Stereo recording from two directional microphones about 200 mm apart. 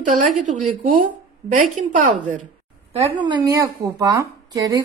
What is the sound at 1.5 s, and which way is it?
Speech, 35° right (ahead or behind).